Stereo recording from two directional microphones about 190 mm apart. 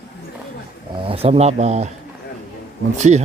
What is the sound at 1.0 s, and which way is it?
Speech, 30° right (ahead or behind).